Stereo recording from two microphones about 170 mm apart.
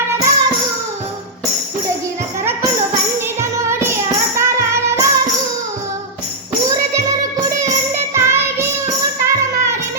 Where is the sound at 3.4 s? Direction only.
15° right (ahead or behind).